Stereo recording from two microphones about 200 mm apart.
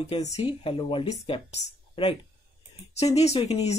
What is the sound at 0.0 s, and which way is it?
Speech, 35° left (ahead or behind).